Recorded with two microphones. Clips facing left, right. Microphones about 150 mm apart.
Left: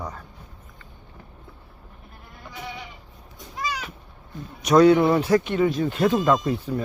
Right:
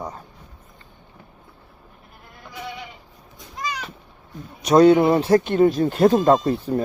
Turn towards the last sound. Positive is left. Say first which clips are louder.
# right 4 dB
turn(degrees=-35)  # may be behind; listen again after turning